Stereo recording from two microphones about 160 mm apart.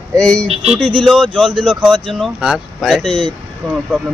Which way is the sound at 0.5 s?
40° right (ahead or behind).